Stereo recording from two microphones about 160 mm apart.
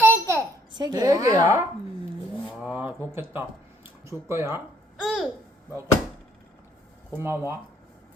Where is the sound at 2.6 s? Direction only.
10° right (ahead or behind).